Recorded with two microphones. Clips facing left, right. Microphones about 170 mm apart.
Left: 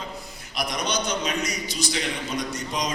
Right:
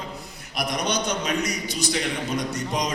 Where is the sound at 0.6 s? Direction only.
60° right (ahead or behind).